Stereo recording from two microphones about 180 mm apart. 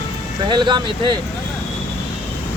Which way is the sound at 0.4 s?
25° right (ahead or behind).